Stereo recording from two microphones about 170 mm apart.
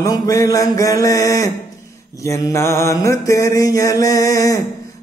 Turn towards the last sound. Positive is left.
turn(degrees=20)  # may be behind; listen again after turning